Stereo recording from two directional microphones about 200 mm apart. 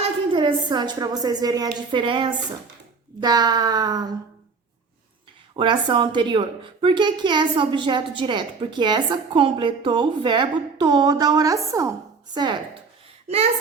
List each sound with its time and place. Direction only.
0.3 s a child's voice: 25° right (ahead or behind)
5.5 s a child's voice: 25° right (ahead or behind)
13.3 s a child's voice: 30° right (ahead or behind)